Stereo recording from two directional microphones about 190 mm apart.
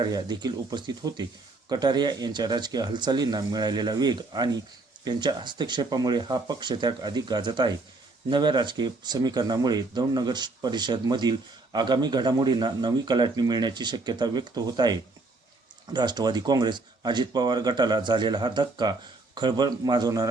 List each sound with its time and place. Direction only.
0.0 s speech: 25° right (ahead or behind)